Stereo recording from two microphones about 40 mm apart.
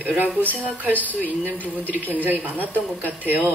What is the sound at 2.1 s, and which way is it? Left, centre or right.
Speech, right.